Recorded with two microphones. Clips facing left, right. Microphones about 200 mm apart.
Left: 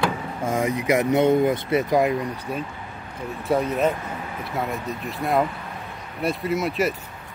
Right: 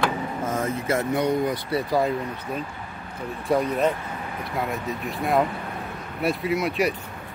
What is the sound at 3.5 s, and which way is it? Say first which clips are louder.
Speech: left 1 dB; 5° left (ahead or behind).